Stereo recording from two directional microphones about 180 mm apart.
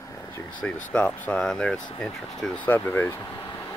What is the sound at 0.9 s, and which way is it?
Speech, 5° left (ahead or behind).